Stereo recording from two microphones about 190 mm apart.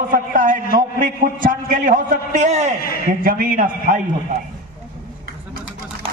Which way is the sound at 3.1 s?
50° right (ahead or behind).